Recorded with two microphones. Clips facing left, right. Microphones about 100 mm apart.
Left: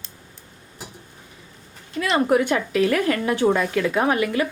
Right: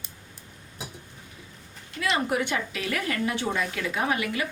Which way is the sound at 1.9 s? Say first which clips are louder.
Left 7 dB; 45° left (ahead or behind).